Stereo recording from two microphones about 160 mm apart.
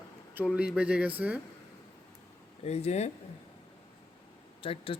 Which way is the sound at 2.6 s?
40° left (ahead or behind).